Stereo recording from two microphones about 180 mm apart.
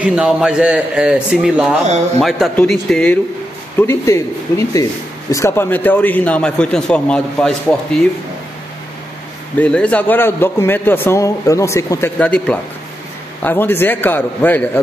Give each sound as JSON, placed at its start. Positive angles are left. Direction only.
{"t": 0.0, "sound": "a man's voice", "side_deg": -5}
{"t": 9.6, "sound": "a man's voice", "side_deg": 5}